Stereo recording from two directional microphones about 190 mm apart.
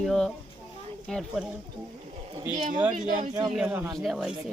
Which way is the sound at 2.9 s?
40° right (ahead or behind).